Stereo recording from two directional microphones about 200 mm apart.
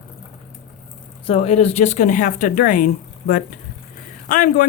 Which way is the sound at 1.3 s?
30° left (ahead or behind).